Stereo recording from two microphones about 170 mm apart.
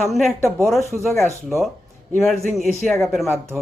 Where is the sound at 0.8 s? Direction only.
15° right (ahead or behind).